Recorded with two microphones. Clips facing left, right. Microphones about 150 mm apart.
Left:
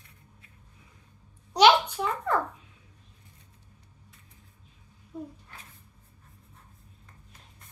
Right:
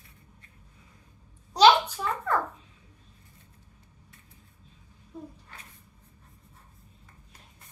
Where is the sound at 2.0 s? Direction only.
15° left (ahead or behind).